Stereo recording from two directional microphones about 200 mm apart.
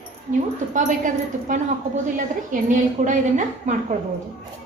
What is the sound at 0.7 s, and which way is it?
A woman's voice, 40° right (ahead or behind).